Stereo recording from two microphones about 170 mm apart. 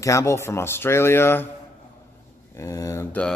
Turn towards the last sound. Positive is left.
turn(degrees=20)  # may be behind; listen again after turning